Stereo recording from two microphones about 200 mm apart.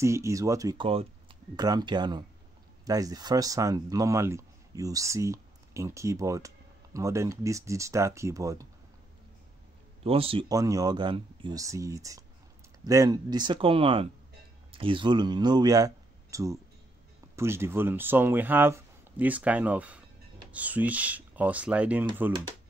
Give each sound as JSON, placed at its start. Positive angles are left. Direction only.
{"t": 0.0, "sound": "speech", "side_deg": -15}
{"t": 10.0, "sound": "speech", "side_deg": -30}
{"t": 10.5, "sound": "speech", "side_deg": -15}